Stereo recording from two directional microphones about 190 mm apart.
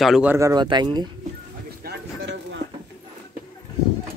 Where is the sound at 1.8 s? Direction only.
60° right (ahead or behind).